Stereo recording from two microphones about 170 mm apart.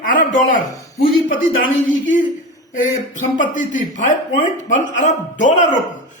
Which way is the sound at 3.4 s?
50° left (ahead or behind).